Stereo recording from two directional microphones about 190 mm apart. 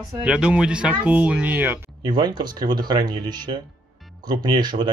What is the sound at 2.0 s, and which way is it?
Speech, 20° right (ahead or behind).